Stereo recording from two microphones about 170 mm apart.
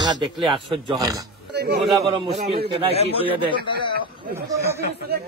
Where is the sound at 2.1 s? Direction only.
40° right (ahead or behind).